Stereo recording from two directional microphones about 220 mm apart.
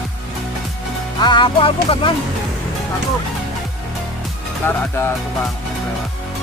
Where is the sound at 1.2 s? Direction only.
20° left (ahead or behind).